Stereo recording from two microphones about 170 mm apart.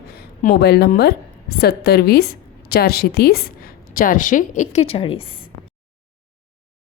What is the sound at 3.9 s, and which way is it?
A woman's voice, 55° left (ahead or behind).